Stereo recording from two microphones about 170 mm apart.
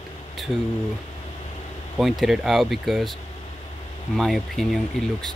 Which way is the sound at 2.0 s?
Centre (ahead or behind).